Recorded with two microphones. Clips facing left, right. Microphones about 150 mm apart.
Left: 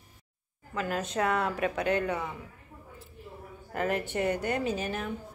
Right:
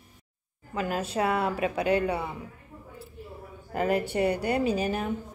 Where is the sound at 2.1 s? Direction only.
30° right (ahead or behind).